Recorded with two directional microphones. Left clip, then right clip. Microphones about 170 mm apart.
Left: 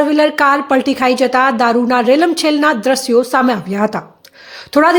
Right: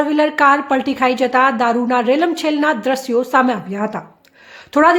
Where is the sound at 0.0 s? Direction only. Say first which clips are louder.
Left 2 dB; 10° left (ahead or behind).